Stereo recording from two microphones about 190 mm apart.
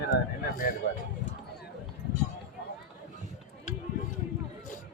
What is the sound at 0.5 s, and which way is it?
Speech, 50° left (ahead or behind).